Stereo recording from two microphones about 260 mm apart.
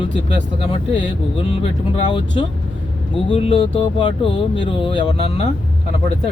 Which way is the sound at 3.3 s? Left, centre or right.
Left.